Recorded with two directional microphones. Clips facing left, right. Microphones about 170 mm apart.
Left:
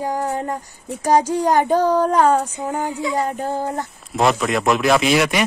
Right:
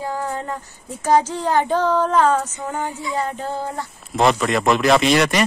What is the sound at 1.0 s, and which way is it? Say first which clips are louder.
Speech: left 2 dB; 15° left (ahead or behind).